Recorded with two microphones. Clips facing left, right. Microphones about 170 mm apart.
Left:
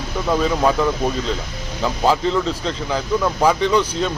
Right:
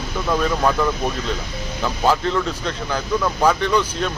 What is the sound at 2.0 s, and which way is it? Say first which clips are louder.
A man's voice: left 1 dB; centre (ahead or behind).